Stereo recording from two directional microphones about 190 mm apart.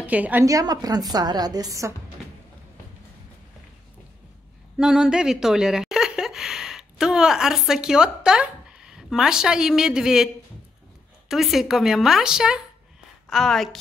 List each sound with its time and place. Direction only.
0.0 s a woman's voice: 10° right (ahead or behind)
4.7 s speech: 5° right (ahead or behind)